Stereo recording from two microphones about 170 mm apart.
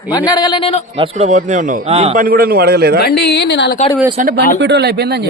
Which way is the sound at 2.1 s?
55° right (ahead or behind).